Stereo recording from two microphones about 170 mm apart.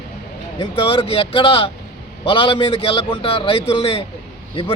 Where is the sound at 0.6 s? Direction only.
30° left (ahead or behind).